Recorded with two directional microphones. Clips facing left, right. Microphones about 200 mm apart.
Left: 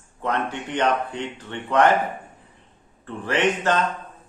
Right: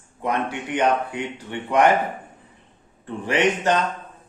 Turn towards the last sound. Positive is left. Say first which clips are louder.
# right 1 dB
turn(degrees=-15)  # may be behind; listen again after turning